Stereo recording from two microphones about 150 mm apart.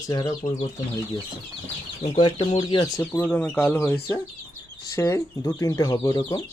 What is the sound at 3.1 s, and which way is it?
Speech, 10° left (ahead or behind).